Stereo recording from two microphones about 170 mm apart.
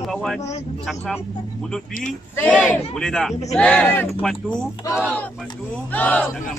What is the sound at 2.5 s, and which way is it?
Speech, centre (ahead or behind).